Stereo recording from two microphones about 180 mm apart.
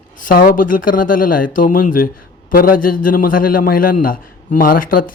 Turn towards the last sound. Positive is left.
turn(degrees=50)  # may be behind; listen again after turning